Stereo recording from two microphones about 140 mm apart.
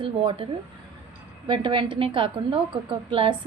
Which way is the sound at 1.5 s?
35° right (ahead or behind).